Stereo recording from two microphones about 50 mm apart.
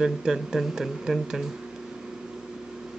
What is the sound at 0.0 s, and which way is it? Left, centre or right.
Speech, centre.